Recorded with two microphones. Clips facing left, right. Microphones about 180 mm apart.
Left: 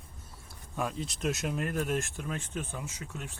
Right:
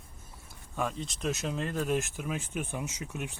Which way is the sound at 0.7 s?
Centre (ahead or behind).